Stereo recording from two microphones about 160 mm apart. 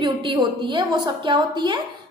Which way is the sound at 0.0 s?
30° right (ahead or behind).